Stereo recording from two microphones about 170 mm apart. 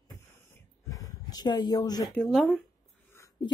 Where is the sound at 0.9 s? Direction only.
20° left (ahead or behind).